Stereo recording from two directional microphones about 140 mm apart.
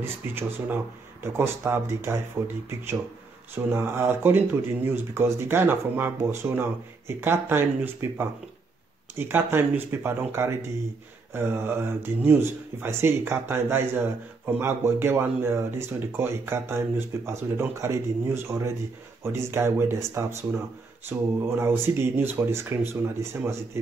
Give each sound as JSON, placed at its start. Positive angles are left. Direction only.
{"t": 0.0, "sound": "speech", "side_deg": -15}